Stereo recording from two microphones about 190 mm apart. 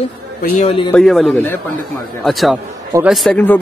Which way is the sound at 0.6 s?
25° left (ahead or behind).